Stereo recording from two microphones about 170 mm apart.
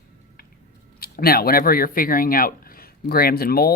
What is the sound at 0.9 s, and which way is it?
Speech, 60° left (ahead or behind).